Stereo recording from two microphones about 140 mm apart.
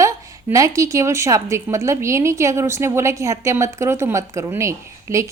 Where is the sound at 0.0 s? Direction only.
25° right (ahead or behind).